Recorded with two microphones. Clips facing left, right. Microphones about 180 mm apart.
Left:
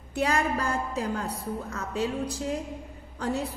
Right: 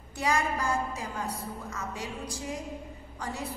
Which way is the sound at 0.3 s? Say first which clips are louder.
Right 2 dB; 60° left (ahead or behind).